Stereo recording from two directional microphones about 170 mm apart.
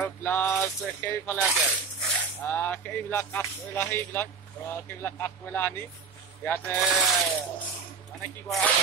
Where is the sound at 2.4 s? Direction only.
10° left (ahead or behind).